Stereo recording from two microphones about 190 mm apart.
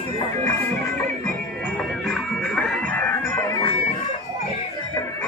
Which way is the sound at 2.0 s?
5° left (ahead or behind).